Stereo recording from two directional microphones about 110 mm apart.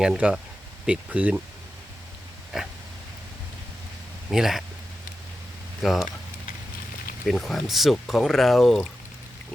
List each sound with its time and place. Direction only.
0.0 s speech: 5° right (ahead or behind)
4.3 s speech: 5° right (ahead or behind)
5.8 s speech: centre (ahead or behind)
7.3 s speech: centre (ahead or behind)